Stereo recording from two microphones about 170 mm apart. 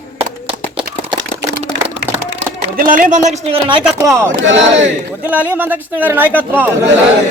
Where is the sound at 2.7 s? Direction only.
55° right (ahead or behind).